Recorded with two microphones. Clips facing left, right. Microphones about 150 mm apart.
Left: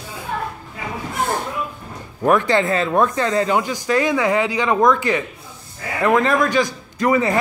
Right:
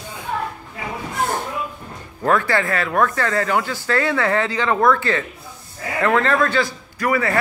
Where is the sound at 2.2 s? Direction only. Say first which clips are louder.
Left 3 dB; 20° left (ahead or behind).